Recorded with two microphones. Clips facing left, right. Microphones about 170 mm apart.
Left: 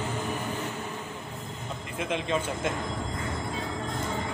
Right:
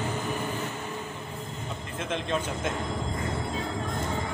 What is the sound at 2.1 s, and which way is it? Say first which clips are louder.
Speech: left 1 dB; 5° left (ahead or behind).